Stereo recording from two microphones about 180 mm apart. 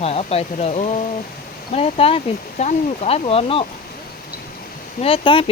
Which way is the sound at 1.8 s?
35° left (ahead or behind).